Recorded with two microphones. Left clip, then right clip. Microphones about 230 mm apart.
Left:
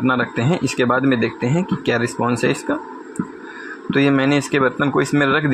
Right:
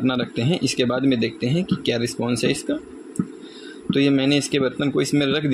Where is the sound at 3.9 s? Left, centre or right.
Centre.